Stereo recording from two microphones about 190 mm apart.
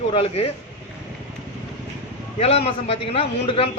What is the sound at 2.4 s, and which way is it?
A man's voice, 30° left (ahead or behind).